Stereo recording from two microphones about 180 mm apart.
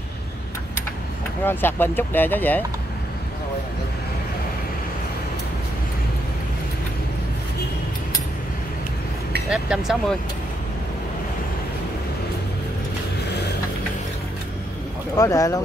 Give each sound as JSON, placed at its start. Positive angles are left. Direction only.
{"t": 1.4, "sound": "speech", "side_deg": 10}
{"t": 9.5, "sound": "speech", "side_deg": -5}
{"t": 15.1, "sound": "speech", "side_deg": 20}